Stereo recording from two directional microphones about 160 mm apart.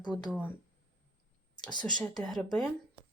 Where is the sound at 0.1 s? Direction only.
Centre (ahead or behind).